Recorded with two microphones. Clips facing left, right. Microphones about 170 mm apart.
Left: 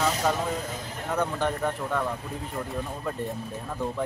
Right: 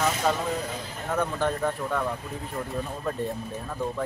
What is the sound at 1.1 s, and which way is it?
Speech, 15° left (ahead or behind).